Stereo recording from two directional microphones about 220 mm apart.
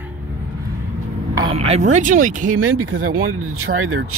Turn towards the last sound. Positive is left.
turn(degrees=-70)  # may be behind; listen again after turning